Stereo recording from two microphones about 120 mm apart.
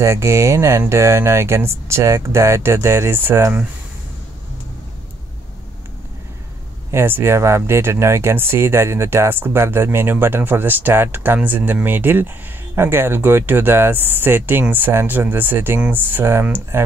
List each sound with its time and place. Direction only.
0.0 s speech: 25° right (ahead or behind)
6.9 s speech: 20° right (ahead or behind)